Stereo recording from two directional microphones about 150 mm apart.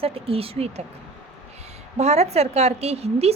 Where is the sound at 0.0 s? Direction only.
40° right (ahead or behind).